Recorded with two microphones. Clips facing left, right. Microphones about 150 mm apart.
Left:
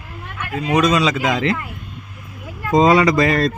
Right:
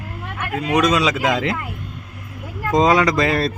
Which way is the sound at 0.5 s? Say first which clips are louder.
Left 1 dB; centre (ahead or behind).